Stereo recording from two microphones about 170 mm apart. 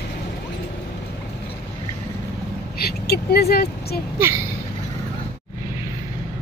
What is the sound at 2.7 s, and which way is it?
Vehicle, 65° left (ahead or behind).